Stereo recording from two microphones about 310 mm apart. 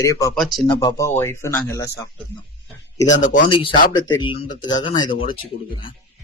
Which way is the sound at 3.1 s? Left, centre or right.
Left.